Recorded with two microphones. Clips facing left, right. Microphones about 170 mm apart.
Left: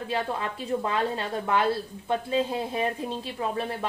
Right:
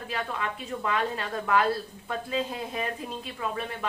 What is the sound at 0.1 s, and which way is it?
A woman's voice, 30° left (ahead or behind).